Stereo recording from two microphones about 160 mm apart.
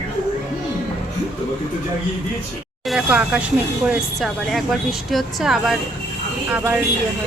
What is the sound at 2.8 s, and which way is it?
Speech, 5° right (ahead or behind).